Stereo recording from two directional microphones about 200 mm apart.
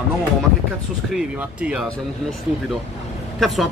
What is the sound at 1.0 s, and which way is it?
Speech, 5° right (ahead or behind).